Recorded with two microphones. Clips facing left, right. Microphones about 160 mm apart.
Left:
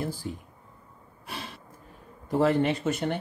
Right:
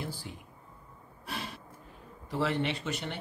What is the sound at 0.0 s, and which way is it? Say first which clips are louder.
Speech: left 7 dB; 45° left (ahead or behind).